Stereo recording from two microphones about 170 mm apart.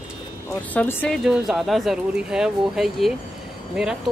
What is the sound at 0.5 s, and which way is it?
Speech, 10° left (ahead or behind).